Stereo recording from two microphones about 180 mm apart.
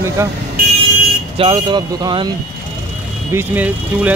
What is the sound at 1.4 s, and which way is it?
Speech, 25° right (ahead or behind).